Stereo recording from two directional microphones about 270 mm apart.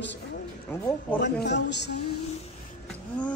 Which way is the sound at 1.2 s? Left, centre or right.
Left.